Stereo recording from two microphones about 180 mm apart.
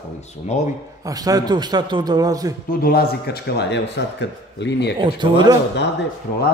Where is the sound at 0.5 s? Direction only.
40° left (ahead or behind).